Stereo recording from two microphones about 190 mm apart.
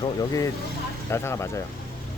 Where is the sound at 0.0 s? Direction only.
20° left (ahead or behind).